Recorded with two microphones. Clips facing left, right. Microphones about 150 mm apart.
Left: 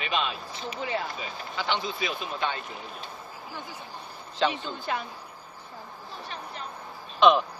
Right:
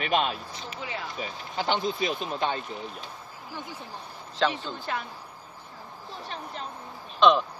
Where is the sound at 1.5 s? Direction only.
45° right (ahead or behind).